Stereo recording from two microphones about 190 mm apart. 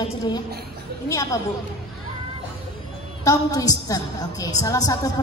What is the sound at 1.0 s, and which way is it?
Speech, 15° left (ahead or behind).